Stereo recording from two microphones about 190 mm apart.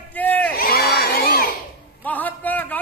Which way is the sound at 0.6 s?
55° left (ahead or behind).